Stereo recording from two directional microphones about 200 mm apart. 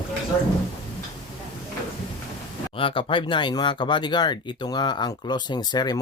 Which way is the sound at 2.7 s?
25° left (ahead or behind).